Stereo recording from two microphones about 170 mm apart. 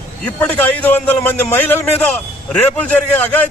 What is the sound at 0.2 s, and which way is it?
A man's voice, 10° left (ahead or behind).